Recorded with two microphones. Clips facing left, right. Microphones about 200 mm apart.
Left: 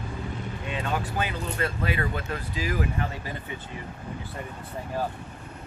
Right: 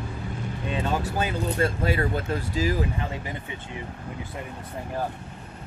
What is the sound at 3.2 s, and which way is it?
Speech, 20° right (ahead or behind).